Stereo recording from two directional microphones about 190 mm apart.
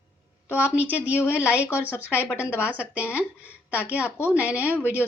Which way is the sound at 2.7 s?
5° right (ahead or behind).